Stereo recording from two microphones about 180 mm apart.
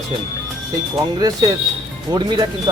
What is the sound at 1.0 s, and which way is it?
Speech, 20° right (ahead or behind).